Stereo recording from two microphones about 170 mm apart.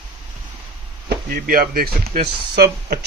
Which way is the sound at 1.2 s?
55° right (ahead or behind).